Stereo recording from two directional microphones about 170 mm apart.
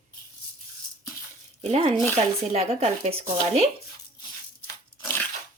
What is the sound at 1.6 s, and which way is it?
Speech, 40° right (ahead or behind).